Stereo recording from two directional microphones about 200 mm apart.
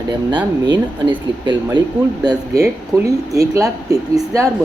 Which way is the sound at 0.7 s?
25° right (ahead or behind).